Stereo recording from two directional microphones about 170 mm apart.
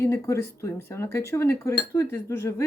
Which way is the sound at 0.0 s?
15° left (ahead or behind).